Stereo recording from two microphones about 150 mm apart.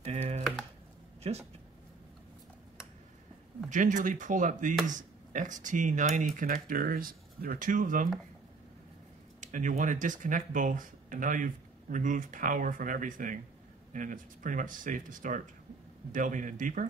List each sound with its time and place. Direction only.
0.0 s typing: 50° right (ahead or behind)
1.2 s speech: 40° right (ahead or behind)
3.7 s speech: 60° right (ahead or behind)
9.4 s speech: 60° right (ahead or behind)